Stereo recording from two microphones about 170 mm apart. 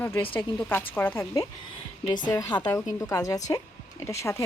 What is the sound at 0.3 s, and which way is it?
A woman's voice, 10° left (ahead or behind).